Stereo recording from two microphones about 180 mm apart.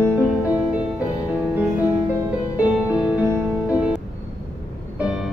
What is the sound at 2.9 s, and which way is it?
Music, 10° right (ahead or behind).